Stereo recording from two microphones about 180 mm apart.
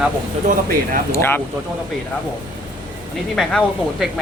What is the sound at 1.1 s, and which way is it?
Speech, 15° left (ahead or behind).